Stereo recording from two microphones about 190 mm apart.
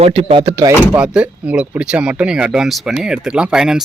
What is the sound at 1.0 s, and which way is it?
Speech, 5° right (ahead or behind).